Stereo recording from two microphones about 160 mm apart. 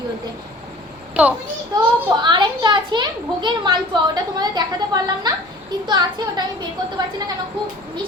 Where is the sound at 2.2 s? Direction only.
30° right (ahead or behind).